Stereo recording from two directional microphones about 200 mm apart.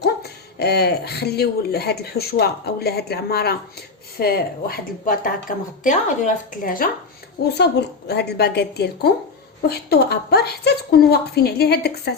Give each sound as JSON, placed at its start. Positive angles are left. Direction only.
{"t": 0.0, "sound": "speech", "side_deg": 55}
{"t": 7.5, "sound": "a woman's voice", "side_deg": 55}